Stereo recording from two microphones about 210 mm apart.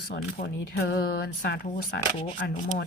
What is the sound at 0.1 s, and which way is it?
Speech, 50° left (ahead or behind).